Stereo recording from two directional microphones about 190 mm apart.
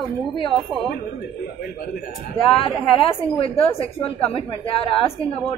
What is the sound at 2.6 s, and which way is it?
A woman's voice, 25° left (ahead or behind).